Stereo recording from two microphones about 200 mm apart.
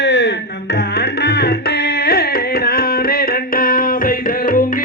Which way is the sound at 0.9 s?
55° left (ahead or behind).